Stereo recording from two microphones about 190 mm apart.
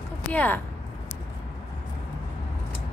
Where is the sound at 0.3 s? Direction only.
5° left (ahead or behind).